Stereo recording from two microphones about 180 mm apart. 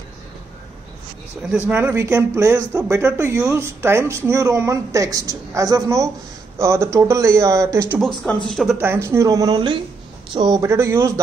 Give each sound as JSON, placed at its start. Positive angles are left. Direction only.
{"t": 1.7, "sound": "speech", "side_deg": -10}
{"t": 8.5, "sound": "speech", "side_deg": 0}
{"t": 8.7, "sound": "speech", "side_deg": -10}